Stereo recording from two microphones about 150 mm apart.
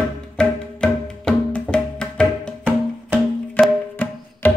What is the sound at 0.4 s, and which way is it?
Music, 5° left (ahead or behind).